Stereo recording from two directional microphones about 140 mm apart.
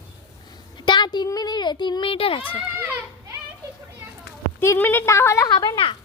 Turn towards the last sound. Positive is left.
turn(degrees=35)  # may be behind; listen again after turning